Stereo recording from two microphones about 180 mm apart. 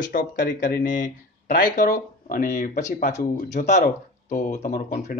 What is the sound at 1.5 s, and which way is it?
Speech, 50° left (ahead or behind).